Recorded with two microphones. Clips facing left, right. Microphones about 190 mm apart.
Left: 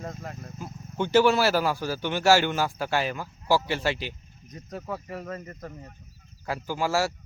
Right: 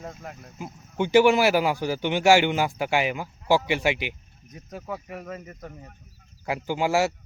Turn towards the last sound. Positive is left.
turn(degrees=-20)  # may be behind; listen again after turning